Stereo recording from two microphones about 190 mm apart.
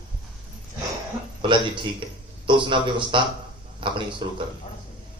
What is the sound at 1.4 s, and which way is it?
Speech, 25° right (ahead or behind).